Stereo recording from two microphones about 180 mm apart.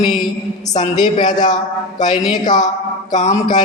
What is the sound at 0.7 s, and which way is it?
A man's voice, 25° left (ahead or behind).